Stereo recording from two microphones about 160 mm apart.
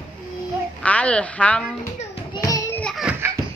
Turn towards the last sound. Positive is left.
turn(degrees=-15)  # may be behind; listen again after turning